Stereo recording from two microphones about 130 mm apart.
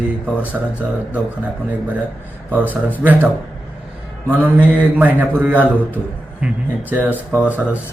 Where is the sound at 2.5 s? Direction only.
15° right (ahead or behind).